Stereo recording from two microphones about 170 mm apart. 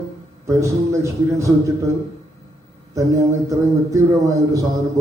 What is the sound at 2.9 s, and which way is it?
A man's voice, 20° right (ahead or behind).